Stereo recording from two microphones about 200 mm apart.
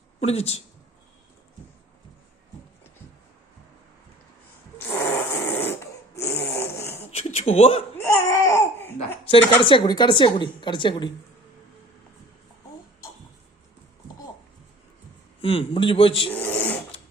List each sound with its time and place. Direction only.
0.2 s speech: 30° left (ahead or behind)
4.9 s snoring: 10° left (ahead or behind)
7.1 s a sound: 30° left (ahead or behind)
7.9 s babbling: 10° left (ahead or behind)
9.6 s a woman's voice: 25° left (ahead or behind)
15.4 s a woman's voice: 30° left (ahead or behind)
16.3 s dog: 10° left (ahead or behind)